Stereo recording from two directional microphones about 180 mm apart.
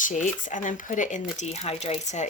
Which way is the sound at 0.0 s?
45° left (ahead or behind).